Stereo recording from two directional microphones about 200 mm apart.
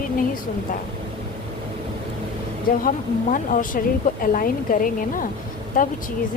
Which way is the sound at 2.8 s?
40° left (ahead or behind).